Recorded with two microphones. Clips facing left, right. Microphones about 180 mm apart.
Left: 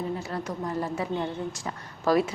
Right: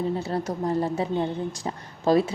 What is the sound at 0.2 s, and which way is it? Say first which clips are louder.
A woman's voice: right 5 dB; 30° right (ahead or behind).